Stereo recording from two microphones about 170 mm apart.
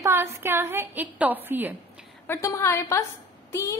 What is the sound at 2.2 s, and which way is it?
A woman's voice, 15° left (ahead or behind).